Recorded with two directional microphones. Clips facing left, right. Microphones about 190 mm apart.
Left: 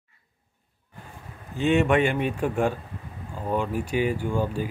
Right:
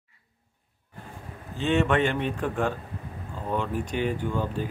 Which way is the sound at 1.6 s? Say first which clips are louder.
Left 3 dB; 15° left (ahead or behind).